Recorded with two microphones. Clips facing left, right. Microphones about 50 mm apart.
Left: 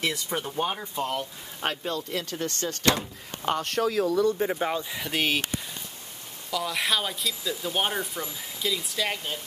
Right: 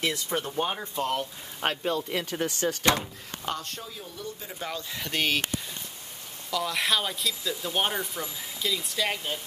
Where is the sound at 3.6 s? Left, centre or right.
Left.